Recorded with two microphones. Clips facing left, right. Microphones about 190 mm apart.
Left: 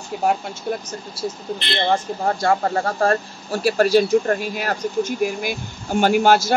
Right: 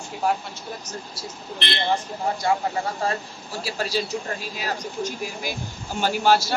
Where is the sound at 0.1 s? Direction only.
50° left (ahead or behind).